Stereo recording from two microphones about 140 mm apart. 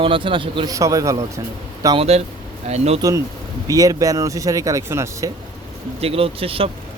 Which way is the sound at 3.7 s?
25° right (ahead or behind).